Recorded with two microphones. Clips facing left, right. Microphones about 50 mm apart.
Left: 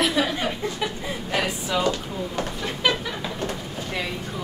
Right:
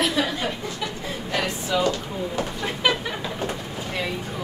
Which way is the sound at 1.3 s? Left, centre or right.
Centre.